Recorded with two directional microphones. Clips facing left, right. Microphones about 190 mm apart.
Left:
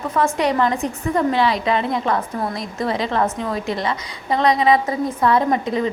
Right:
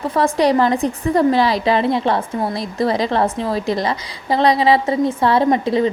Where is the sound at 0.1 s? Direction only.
35° right (ahead or behind).